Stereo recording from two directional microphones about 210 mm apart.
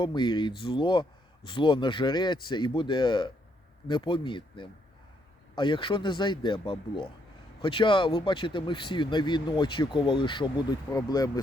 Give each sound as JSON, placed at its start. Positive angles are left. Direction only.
{"t": 0.0, "sound": "speech", "side_deg": 20}